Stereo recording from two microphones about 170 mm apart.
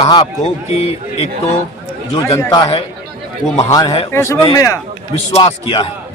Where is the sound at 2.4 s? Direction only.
20° left (ahead or behind).